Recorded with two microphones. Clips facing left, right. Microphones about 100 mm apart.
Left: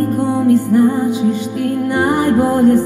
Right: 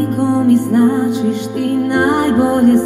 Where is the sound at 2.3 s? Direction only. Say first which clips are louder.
Right 1 dB; 20° right (ahead or behind).